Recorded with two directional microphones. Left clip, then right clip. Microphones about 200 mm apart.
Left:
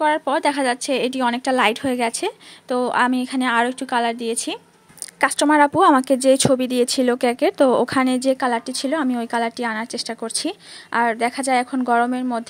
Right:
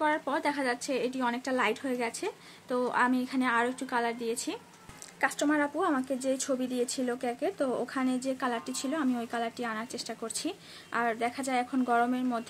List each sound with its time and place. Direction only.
0.0 s speech: 40° left (ahead or behind)
5.2 s speech: 50° left (ahead or behind); by 12.4 s 35° left (ahead or behind)